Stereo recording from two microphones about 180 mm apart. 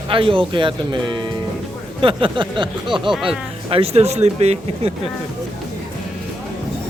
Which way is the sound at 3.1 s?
Centre (ahead or behind).